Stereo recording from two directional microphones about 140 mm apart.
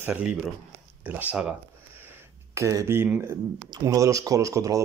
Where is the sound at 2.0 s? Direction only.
20° right (ahead or behind).